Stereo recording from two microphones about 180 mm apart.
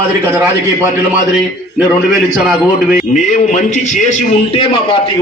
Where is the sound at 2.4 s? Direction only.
5° right (ahead or behind).